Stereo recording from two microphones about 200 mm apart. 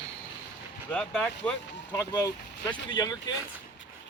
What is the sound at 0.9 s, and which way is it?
Speech, 5° left (ahead or behind).